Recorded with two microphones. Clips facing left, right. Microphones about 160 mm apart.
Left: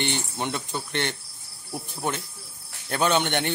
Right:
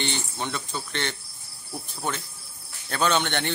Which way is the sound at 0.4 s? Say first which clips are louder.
Left 2 dB; 20° left (ahead or behind).